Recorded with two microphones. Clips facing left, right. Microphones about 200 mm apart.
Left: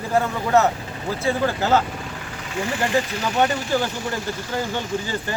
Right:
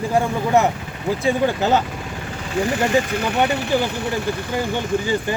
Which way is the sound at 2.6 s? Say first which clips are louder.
Right 5 dB; 35° right (ahead or behind).